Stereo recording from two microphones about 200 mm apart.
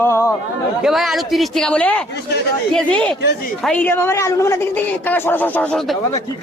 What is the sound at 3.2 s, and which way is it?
Speech, 55° left (ahead or behind).